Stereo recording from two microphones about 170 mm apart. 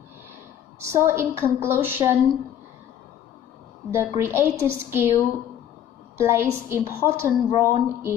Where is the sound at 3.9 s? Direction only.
15° right (ahead or behind).